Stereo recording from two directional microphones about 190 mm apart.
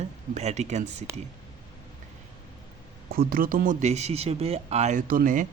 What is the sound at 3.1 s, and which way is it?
Speech, 50° right (ahead or behind).